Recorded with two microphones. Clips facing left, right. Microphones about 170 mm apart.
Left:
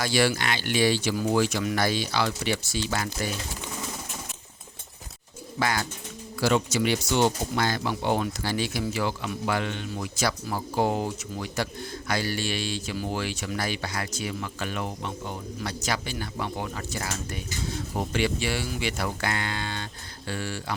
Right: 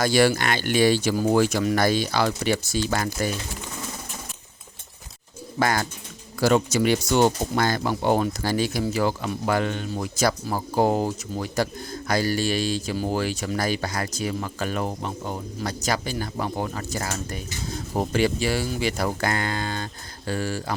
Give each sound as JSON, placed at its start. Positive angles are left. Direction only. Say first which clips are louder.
{"t": 0.0, "sound": "speech", "louder": "right 5 dB", "side_deg": -45}
{"t": 5.5, "sound": "speech", "louder": "right 4 dB", "side_deg": -45}